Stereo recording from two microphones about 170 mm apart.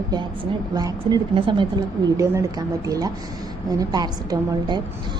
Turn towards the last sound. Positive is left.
turn(degrees=-25)  # may be behind; listen again after turning